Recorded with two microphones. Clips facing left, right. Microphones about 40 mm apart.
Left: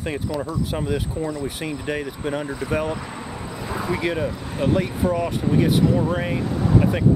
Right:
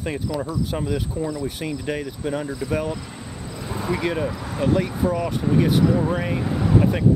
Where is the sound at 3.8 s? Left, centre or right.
Centre.